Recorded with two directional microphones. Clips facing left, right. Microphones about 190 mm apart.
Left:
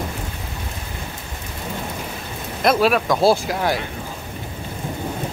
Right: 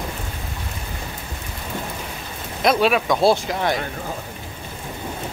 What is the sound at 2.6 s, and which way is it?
Speech, centre (ahead or behind).